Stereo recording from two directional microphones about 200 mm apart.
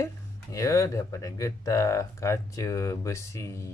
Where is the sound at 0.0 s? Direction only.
15° left (ahead or behind).